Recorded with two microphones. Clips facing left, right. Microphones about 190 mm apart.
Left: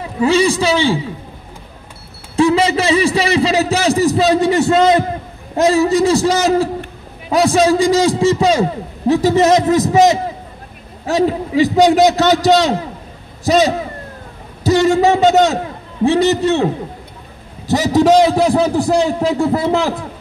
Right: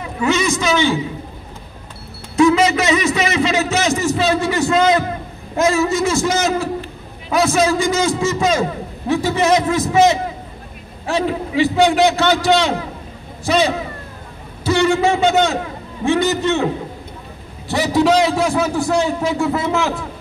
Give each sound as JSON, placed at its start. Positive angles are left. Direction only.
{"t": 0.2, "sound": "a man's voice", "side_deg": 35}
{"t": 2.3, "sound": "a man's voice", "side_deg": 30}
{"t": 17.6, "sound": "a man's voice", "side_deg": 40}